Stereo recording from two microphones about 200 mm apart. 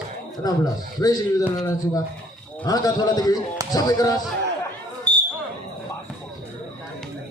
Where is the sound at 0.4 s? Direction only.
20° left (ahead or behind).